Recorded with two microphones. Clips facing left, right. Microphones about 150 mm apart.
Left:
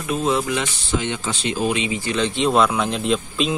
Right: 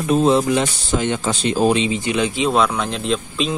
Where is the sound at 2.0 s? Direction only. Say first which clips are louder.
Right 2 dB; 15° right (ahead or behind).